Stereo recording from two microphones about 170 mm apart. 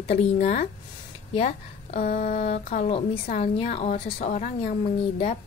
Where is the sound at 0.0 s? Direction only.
40° left (ahead or behind).